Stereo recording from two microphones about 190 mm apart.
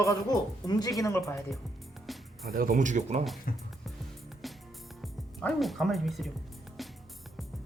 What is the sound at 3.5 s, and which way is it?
Speech, 45° left (ahead or behind).